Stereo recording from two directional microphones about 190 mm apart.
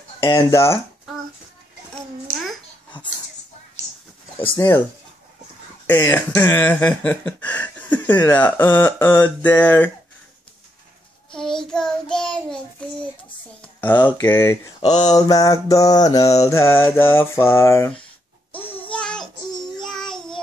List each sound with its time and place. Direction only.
0.2 s speech: 15° left (ahead or behind)
4.4 s speech: 15° left (ahead or behind)
5.9 s speech: 10° left (ahead or behind)
11.3 s child singing: 5° left (ahead or behind)
13.6 s a sound: 10° left (ahead or behind)
14.0 s speech: 10° left (ahead or behind)
18.5 s music: 10° left (ahead or behind)
19.8 s child singing: centre (ahead or behind)